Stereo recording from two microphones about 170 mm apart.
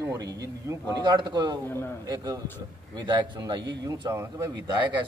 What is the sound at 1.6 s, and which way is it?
Speech, 15° left (ahead or behind).